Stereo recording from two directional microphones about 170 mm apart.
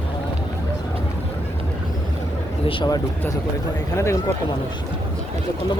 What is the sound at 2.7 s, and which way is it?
Speech, 30° left (ahead or behind).